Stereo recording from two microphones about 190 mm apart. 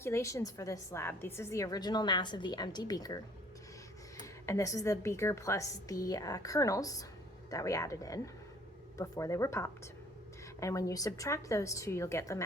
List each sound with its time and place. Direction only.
0.0 s a woman's voice: 15° left (ahead or behind)
4.2 s a woman's voice: 15° left (ahead or behind)